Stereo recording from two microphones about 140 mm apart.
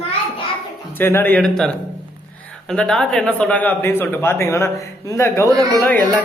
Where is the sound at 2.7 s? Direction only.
5° left (ahead or behind).